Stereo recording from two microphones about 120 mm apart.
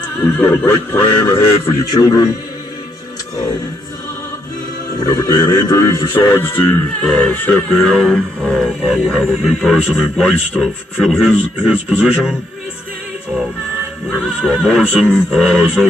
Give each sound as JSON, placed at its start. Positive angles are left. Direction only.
{"t": 0.6, "sound": "a sound", "side_deg": 15}
{"t": 1.6, "sound": "a man's voice", "side_deg": 25}
{"t": 4.9, "sound": "a man's voice", "side_deg": 30}
{"t": 6.1, "sound": "a sound", "side_deg": 15}
{"t": 8.5, "sound": "speech", "side_deg": 5}
{"t": 14.0, "sound": "speech", "side_deg": 0}